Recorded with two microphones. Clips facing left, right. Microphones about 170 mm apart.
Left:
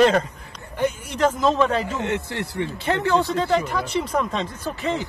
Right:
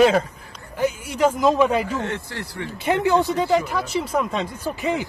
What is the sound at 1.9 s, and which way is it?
Speech, 20° left (ahead or behind).